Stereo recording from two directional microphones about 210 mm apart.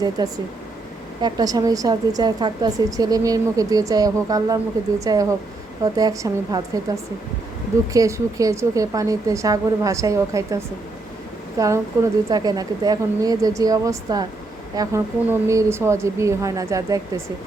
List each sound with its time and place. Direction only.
0.2 s a woman's voice: 20° right (ahead or behind)